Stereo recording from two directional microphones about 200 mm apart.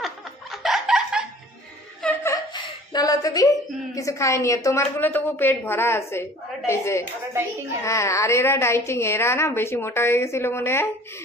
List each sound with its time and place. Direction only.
0.0 s laughter: centre (ahead or behind)
2.5 s a sound: 20° left (ahead or behind)
3.9 s a woman's voice: 15° left (ahead or behind)